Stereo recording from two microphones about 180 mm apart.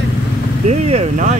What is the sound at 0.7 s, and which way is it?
Vehicle, 40° right (ahead or behind).